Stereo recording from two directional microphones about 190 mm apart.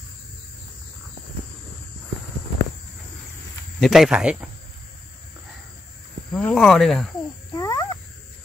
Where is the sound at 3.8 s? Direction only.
Centre (ahead or behind).